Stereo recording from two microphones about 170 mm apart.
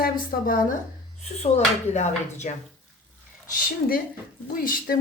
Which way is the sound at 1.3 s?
40° left (ahead or behind).